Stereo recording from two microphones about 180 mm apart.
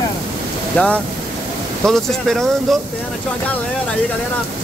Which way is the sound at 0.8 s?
10° left (ahead or behind).